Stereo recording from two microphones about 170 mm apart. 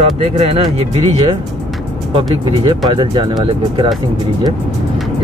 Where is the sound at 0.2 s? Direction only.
35° right (ahead or behind).